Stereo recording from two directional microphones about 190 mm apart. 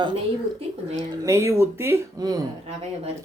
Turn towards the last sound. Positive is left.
turn(degrees=-35)  # may be behind; listen again after turning